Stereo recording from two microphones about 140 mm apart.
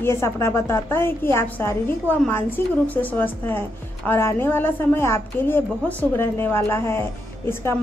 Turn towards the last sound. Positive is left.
turn(degrees=15)  # may be behind; listen again after turning